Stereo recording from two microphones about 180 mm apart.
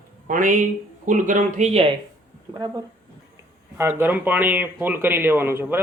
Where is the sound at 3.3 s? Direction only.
15° right (ahead or behind).